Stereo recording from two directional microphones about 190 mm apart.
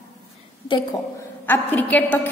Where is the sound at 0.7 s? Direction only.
15° left (ahead or behind).